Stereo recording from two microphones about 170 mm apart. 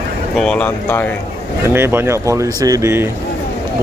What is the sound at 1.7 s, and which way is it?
Speech, 15° right (ahead or behind).